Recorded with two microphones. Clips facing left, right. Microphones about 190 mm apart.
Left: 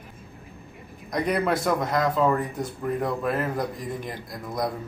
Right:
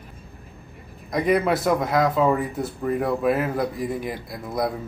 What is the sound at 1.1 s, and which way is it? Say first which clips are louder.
Speech: right 4 dB; centre (ahead or behind).